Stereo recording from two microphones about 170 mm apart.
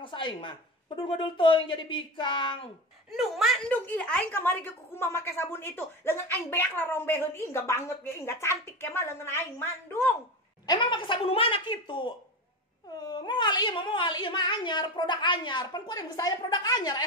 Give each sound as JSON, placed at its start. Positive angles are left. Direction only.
{"t": 0.0, "sound": "speech", "side_deg": 30}
{"t": 3.2, "sound": "a woman's voice", "side_deg": 0}
{"t": 10.7, "sound": "speech", "side_deg": 30}